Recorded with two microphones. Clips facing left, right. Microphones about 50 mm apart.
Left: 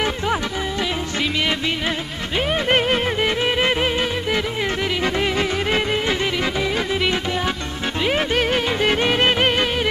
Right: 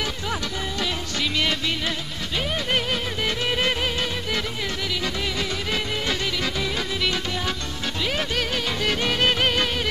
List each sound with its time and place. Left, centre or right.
0.0 s music: left
2.3 s music: left
5.0 s music: left